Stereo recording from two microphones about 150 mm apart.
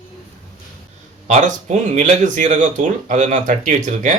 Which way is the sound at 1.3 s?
50° right (ahead or behind).